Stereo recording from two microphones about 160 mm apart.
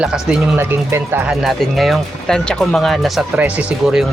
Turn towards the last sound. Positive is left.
turn(degrees=0)  # may be behind; listen again after turning